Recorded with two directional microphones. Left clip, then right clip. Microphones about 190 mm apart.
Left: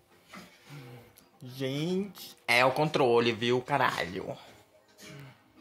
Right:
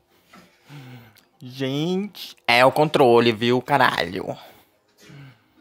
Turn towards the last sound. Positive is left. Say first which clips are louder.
# right 8 dB
turn(degrees=-60)  # may be behind; listen again after turning